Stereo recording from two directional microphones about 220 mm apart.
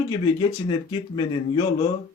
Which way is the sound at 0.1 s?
20° left (ahead or behind).